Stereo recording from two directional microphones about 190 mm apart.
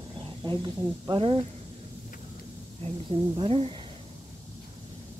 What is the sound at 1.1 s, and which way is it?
Speech, 30° right (ahead or behind).